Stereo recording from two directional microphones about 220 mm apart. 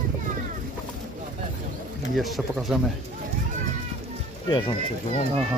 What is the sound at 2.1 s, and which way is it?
Speech, centre (ahead or behind).